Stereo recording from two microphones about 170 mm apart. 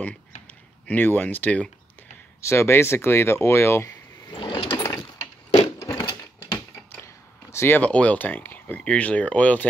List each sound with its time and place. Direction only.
0.8 s speech: 10° left (ahead or behind)
4.4 s sewing machine: 30° left (ahead or behind)
4.6 s sewing machine: 15° left (ahead or behind)
7.5 s speech: 15° left (ahead or behind)